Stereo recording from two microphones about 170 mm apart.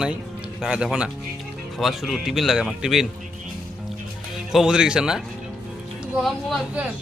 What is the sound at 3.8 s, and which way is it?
Music, centre (ahead or behind).